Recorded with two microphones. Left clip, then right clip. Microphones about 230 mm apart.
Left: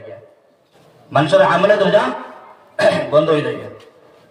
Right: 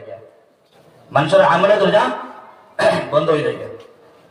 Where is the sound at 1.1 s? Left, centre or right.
Left.